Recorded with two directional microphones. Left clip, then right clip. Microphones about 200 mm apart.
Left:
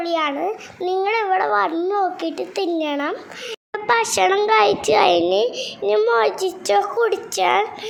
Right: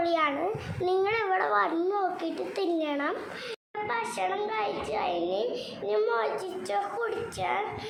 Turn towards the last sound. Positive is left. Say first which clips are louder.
# left 12 dB
turn(degrees=45)  # may be behind; listen again after turning